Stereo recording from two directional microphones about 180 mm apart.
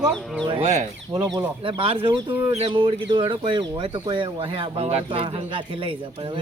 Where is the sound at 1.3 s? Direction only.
25° right (ahead or behind).